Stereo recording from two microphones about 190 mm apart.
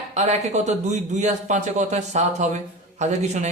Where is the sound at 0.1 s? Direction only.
35° right (ahead or behind).